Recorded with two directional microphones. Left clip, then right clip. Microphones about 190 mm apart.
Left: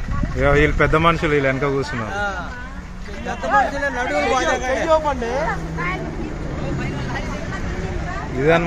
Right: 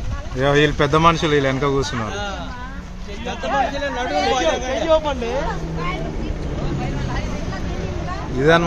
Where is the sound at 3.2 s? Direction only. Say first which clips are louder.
Left 3 dB; 15° left (ahead or behind).